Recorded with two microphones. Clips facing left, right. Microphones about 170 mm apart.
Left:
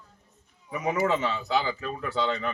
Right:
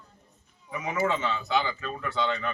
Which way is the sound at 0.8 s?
35° left (ahead or behind).